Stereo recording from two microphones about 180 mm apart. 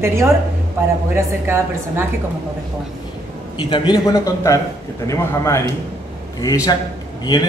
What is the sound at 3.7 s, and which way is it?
A man's voice, 25° left (ahead or behind).